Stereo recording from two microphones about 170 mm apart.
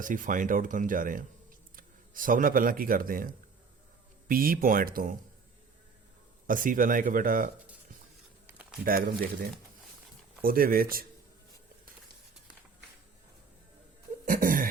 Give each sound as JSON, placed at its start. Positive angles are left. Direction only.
{"t": 0.0, "sound": "speech", "side_deg": -50}
{"t": 6.5, "sound": "speech", "side_deg": -55}
{"t": 8.4, "sound": "a sound", "side_deg": -10}
{"t": 8.8, "sound": "speech", "side_deg": -55}
{"t": 14.3, "sound": "laughter", "side_deg": -55}